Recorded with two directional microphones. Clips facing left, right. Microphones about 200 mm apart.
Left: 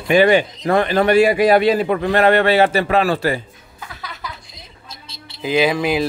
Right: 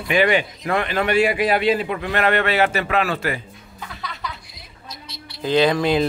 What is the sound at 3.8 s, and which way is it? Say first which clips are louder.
Music: even; centre (ahead or behind).